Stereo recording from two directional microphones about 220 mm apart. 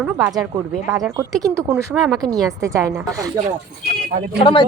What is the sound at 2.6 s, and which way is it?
Speech, 15° right (ahead or behind).